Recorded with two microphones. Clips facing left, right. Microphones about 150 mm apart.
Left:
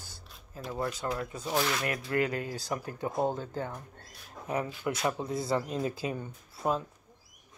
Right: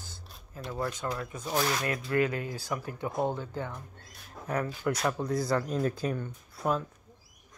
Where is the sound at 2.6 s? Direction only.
40° left (ahead or behind).